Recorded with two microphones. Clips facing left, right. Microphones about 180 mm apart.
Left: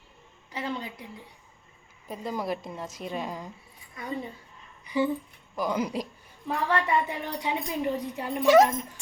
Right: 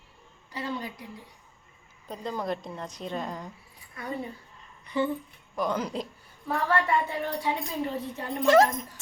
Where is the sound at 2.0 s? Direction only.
5° left (ahead or behind).